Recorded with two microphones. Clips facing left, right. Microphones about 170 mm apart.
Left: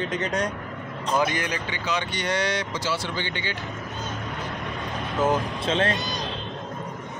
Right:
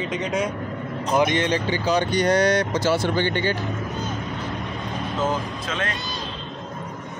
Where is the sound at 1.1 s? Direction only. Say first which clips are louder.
Right 5 dB; 20° right (ahead or behind); by 3.5 s 50° right (ahead or behind).